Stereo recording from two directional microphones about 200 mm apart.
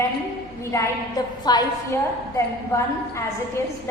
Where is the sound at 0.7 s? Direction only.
20° left (ahead or behind).